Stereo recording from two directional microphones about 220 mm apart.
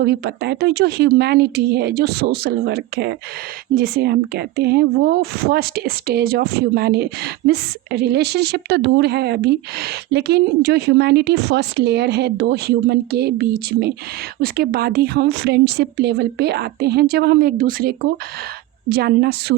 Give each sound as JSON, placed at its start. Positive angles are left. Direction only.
{"t": 0.0, "sound": "speech", "side_deg": -50}